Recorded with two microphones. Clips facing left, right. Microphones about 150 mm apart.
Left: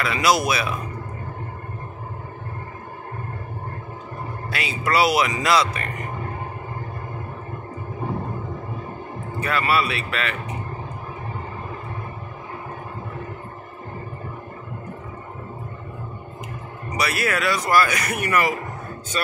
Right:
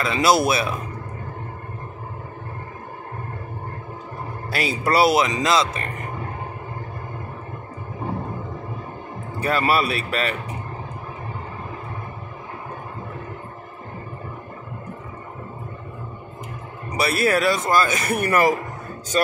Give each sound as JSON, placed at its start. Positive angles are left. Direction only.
{"t": 0.0, "sound": "speech", "side_deg": -25}
{"t": 4.5, "sound": "speech", "side_deg": -35}
{"t": 9.4, "sound": "speech", "side_deg": -35}
{"t": 16.9, "sound": "speech", "side_deg": -30}